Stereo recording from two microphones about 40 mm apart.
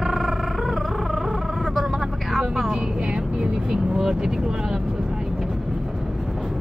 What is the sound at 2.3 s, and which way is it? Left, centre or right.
Vehicle, centre.